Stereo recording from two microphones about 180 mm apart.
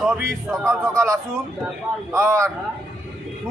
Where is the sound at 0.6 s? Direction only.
15° right (ahead or behind).